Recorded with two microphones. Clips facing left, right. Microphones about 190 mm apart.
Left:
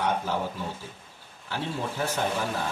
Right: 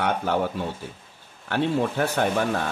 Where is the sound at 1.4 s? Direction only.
65° right (ahead or behind).